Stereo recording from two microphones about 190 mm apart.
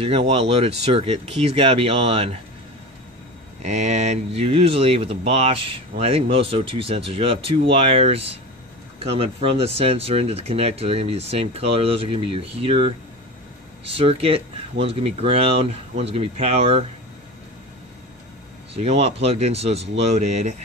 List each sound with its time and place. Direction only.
0.3 s speech: 30° right (ahead or behind)
3.6 s speech: 35° right (ahead or behind)
18.7 s speech: 30° right (ahead or behind)